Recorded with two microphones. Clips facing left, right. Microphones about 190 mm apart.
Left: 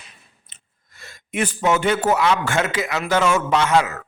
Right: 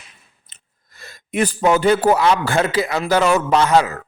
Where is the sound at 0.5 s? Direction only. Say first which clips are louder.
Right 2 dB; 40° right (ahead or behind).